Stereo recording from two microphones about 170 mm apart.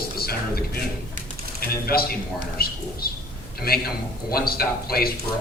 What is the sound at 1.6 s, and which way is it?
A man's voice, 65° left (ahead or behind).